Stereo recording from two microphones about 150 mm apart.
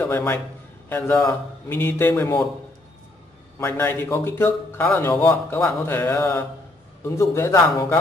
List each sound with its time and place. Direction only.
0.0 s a man's voice: 15° left (ahead or behind)
3.5 s speech: 15° left (ahead or behind)